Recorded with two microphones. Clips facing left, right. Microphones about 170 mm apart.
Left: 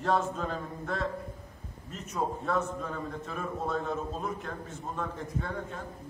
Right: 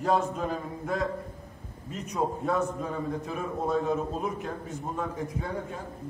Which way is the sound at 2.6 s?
5° right (ahead or behind).